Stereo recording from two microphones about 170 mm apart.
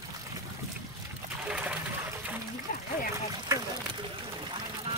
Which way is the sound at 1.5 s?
5° right (ahead or behind).